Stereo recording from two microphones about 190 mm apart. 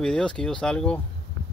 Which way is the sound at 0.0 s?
5° left (ahead or behind).